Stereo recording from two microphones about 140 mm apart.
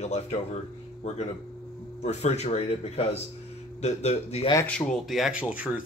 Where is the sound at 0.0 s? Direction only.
55° left (ahead or behind).